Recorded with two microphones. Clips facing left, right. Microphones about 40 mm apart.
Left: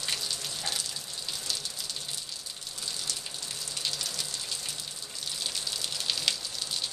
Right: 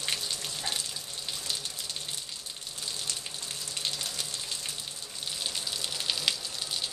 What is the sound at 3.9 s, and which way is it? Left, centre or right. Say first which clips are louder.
Water: even; right.